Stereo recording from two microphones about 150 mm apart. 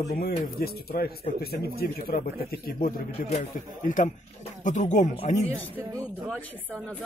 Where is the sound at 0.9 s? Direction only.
90° left.